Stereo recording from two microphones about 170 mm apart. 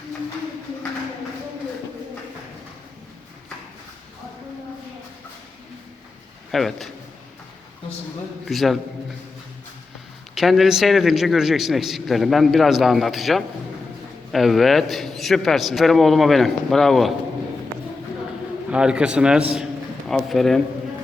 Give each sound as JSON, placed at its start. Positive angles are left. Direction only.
{"t": 6.5, "sound": "a man's voice", "side_deg": 0}
{"t": 8.4, "sound": "a man's voice", "side_deg": 0}
{"t": 10.3, "sound": "a man's voice", "side_deg": 0}
{"t": 18.7, "sound": "a man's voice", "side_deg": -5}